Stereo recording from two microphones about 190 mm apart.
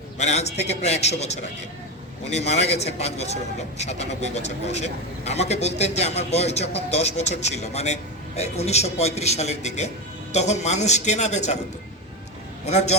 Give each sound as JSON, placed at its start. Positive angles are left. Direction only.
{"t": 0.2, "sound": "speech", "side_deg": 35}
{"t": 12.6, "sound": "speech", "side_deg": 35}